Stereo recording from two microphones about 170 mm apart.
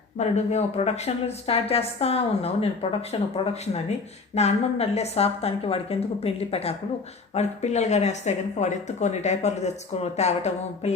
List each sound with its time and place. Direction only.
0.2 s speech: 40° left (ahead or behind)